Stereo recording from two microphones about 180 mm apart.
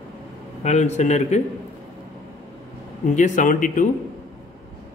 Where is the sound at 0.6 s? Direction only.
40° left (ahead or behind).